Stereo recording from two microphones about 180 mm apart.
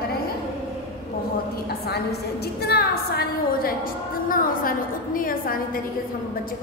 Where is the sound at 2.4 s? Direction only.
60° left (ahead or behind).